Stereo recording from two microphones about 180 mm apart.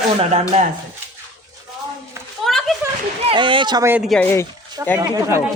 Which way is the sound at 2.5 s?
Centre (ahead or behind).